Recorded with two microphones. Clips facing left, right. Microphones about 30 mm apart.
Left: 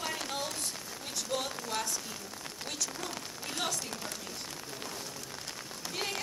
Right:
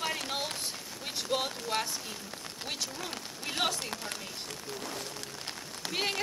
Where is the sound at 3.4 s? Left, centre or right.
Right.